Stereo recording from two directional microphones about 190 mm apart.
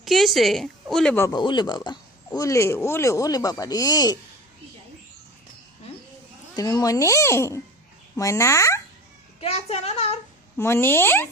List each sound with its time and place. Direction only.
0.0 s a woman's voice: centre (ahead or behind)
1.3 s speech: 25° left (ahead or behind)
6.6 s a child's voice: 20° left (ahead or behind)
9.4 s speech: 35° left (ahead or behind)
10.6 s a child's voice: 10° left (ahead or behind)